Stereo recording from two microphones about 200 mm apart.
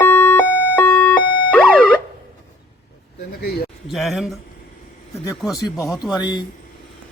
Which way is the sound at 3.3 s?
50° left (ahead or behind).